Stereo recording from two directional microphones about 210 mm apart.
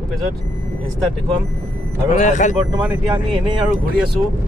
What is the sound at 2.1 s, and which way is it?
Speech, 35° left (ahead or behind).